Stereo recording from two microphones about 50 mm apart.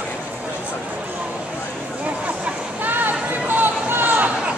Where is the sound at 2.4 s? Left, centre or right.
Right.